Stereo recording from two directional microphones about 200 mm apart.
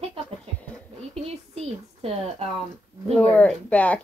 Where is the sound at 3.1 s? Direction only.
5° left (ahead or behind).